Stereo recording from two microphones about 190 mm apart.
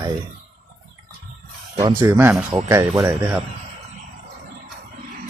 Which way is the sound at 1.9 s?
15° right (ahead or behind).